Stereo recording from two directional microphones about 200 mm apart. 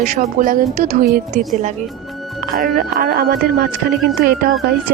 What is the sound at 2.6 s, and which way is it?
A woman's voice, 45° right (ahead or behind).